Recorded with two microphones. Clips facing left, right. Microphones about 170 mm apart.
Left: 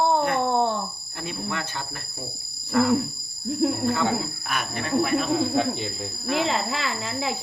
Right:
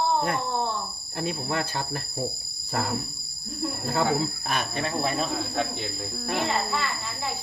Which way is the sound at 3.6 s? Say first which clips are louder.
Left 8 dB; 90° left.